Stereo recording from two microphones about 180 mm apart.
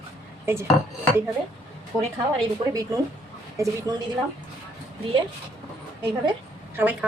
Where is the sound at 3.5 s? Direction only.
20° right (ahead or behind).